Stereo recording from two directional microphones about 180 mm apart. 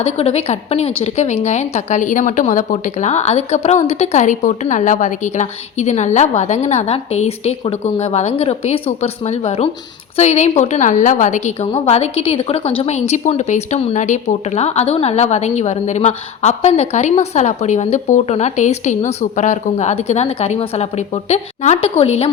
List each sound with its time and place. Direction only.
0.0 s a woman's voice: 35° left (ahead or behind)